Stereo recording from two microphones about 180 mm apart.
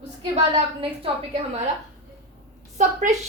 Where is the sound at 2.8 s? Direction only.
40° right (ahead or behind).